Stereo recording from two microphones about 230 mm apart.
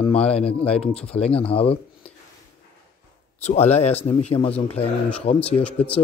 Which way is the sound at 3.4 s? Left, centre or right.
Left.